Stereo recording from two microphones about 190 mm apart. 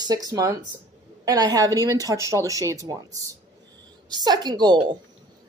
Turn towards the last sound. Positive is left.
turn(degrees=-20)  # may be behind; listen again after turning